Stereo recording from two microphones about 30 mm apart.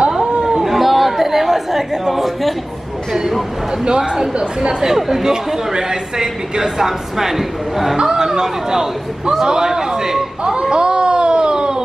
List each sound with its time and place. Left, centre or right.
0.4 s cat: right
0.7 s chatter: centre
3.1 s speech: centre
3.8 s a woman's voice: right
4.9 s speech: centre
5.2 s a woman's voice: right
10.4 s a sound: right